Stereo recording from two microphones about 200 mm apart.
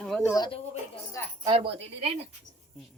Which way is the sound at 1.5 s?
30° right (ahead or behind).